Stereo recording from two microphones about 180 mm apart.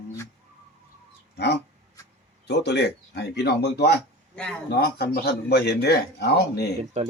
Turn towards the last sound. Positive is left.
turn(degrees=-40)  # may be behind; listen again after turning